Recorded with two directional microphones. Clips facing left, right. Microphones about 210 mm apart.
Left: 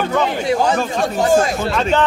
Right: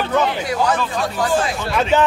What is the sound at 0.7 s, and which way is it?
Speech, 45° left (ahead or behind).